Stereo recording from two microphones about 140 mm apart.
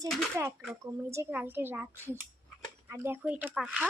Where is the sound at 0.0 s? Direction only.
20° right (ahead or behind).